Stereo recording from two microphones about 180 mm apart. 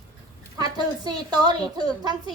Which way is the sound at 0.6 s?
20° right (ahead or behind).